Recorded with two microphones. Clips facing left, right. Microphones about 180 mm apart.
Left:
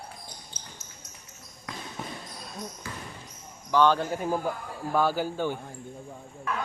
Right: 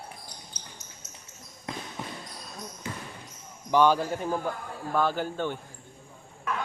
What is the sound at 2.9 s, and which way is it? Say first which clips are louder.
Basketball bounce: right 2 dB; 20° right (ahead or behind).